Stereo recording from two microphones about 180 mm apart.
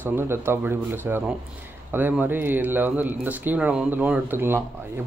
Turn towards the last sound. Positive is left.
turn(degrees=-10)  # may be behind; listen again after turning